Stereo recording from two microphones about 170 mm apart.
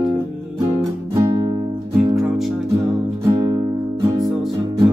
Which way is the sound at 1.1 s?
20° right (ahead or behind).